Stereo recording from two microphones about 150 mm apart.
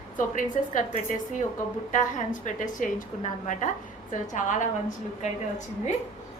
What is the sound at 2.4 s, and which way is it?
A woman's voice, 60° left (ahead or behind).